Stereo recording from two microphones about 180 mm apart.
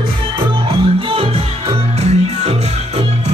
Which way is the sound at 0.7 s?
30° right (ahead or behind).